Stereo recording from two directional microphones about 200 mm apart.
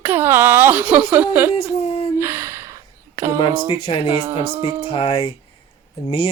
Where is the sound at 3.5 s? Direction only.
15° right (ahead or behind).